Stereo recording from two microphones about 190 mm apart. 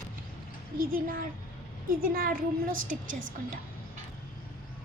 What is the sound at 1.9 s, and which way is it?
A woman's voice, 50° right (ahead or behind).